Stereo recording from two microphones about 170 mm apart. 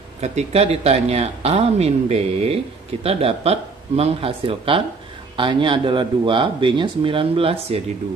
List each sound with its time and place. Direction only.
0.2 s speech: 40° right (ahead or behind)